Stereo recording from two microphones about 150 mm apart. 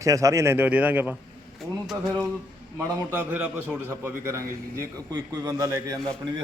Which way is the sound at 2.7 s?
15° right (ahead or behind).